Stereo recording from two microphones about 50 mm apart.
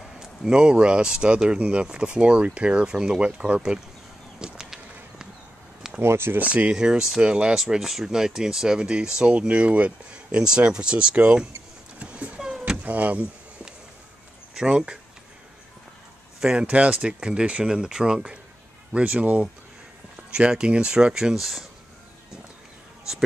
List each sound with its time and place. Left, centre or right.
0.2 s speech: centre
4.4 s bee: centre
6.0 s speech: right
6.4 s speech: right
6.7 s speech: centre
7.5 s speech: centre
12.0 s a sound: right
12.4 s power windows: centre
12.8 s speech: right
14.5 s speech: centre
16.3 s speech: centre
16.6 s speech: right; by 21.6 s centre